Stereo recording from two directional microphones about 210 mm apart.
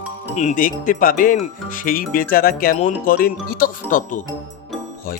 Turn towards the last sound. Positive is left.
turn(degrees=40)  # may be behind; listen again after turning